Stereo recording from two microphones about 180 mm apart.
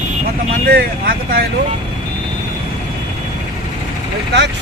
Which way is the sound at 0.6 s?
55° right (ahead or behind).